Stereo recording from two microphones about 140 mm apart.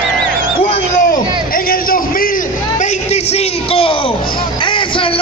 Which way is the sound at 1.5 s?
90° left.